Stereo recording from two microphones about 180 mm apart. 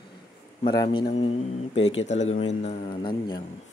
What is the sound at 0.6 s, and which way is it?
A man's voice, 25° left (ahead or behind).